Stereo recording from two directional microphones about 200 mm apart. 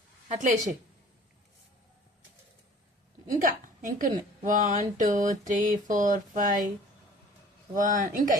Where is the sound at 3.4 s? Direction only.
40° right (ahead or behind).